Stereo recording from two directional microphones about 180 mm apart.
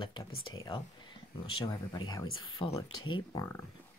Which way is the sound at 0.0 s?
25° left (ahead or behind).